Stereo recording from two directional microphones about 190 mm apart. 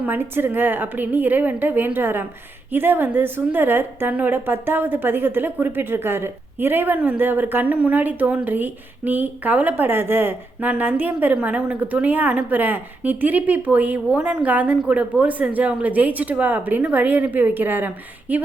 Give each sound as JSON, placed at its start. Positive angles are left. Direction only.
{"t": 0.0, "sound": "a woman's voice", "side_deg": -10}